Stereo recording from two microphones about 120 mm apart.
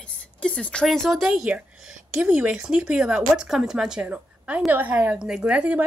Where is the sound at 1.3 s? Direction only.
10° right (ahead or behind).